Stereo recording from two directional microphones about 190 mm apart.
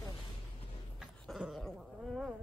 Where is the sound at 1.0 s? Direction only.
5° right (ahead or behind).